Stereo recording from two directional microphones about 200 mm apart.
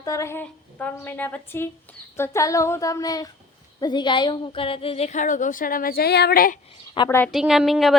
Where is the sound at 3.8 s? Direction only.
20° left (ahead or behind); by 6.6 s 45° left (ahead or behind).